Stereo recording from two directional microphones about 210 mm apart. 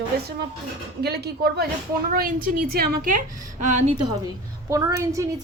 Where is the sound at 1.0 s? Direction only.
50° right (ahead or behind).